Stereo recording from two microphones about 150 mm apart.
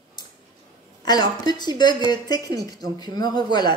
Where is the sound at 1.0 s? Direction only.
25° left (ahead or behind).